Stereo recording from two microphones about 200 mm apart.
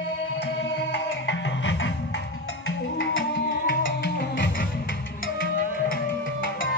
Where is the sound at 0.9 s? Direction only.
65° left (ahead or behind).